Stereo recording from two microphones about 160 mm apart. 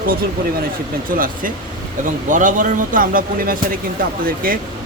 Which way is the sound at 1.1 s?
60° right (ahead or behind).